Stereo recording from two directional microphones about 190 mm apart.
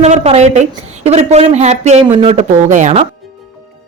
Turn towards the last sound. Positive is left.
turn(degrees=-35)  # may be behind; listen again after turning